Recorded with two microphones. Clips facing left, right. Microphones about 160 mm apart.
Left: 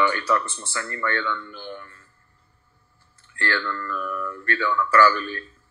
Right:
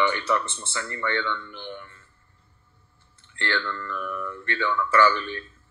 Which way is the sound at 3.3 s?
20° right (ahead or behind).